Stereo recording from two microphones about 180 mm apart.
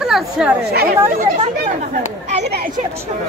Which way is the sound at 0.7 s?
60° right (ahead or behind).